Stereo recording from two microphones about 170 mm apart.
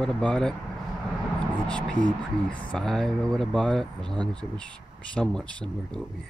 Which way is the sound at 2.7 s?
5° left (ahead or behind).